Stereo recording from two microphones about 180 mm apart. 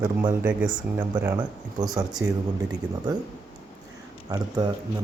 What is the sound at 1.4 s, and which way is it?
Speech, 20° right (ahead or behind).